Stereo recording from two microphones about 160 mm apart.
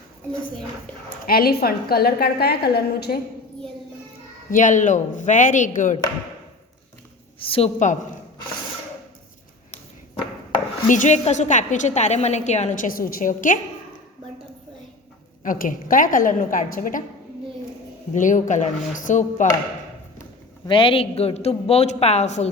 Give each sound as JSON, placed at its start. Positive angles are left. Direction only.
{"t": 1.2, "sound": "a woman's voice", "side_deg": 70}
{"t": 4.5, "sound": "a woman's voice", "side_deg": 55}
{"t": 7.4, "sound": "a man's voice", "side_deg": 35}
{"t": 10.8, "sound": "a woman's voice", "side_deg": 50}
{"t": 15.4, "sound": "a woman's voice", "side_deg": 60}
{"t": 18.1, "sound": "a woman's voice", "side_deg": 50}
{"t": 20.7, "sound": "a man's voice", "side_deg": 30}